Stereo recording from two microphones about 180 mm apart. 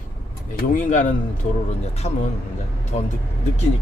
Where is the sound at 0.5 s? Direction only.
45° left (ahead or behind).